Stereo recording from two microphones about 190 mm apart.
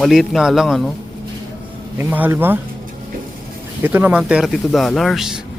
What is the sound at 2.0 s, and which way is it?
Speech, 10° right (ahead or behind).